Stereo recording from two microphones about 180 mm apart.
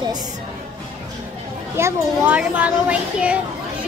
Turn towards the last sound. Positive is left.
turn(degrees=-5)  # may be behind; listen again after turning